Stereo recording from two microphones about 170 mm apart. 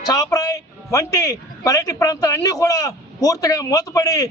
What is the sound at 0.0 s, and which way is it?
Speech, 20° left (ahead or behind).